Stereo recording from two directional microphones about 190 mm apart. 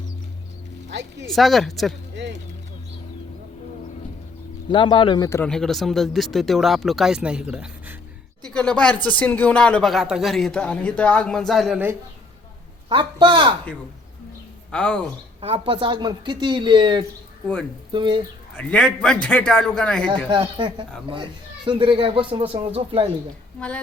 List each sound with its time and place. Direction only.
1.3 s speech: centre (ahead or behind)
2.1 s speech: 65° right (ahead or behind)
4.7 s speech: 25° left (ahead or behind)
5.5 s speech: centre (ahead or behind)
8.4 s speech: 5° left (ahead or behind)
12.9 s a man's voice: 25° right (ahead or behind)
14.7 s speech: 5° left (ahead or behind)
15.4 s a man's voice: 30° right (ahead or behind)
18.5 s speech: 5° left (ahead or behind)
20.1 s a man's voice: 25° right (ahead or behind)
23.6 s music: 5° left (ahead or behind)